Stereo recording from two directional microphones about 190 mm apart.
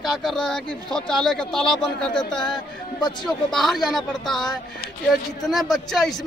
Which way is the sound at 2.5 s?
25° left (ahead or behind).